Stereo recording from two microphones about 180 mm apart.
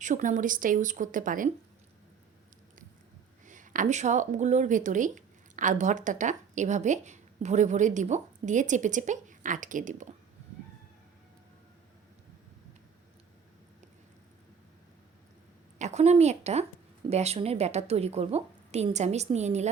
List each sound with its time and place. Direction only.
0.0 s speech: 45° right (ahead or behind)
3.4 s speech: 45° right (ahead or behind)
15.8 s a woman's voice: 40° right (ahead or behind)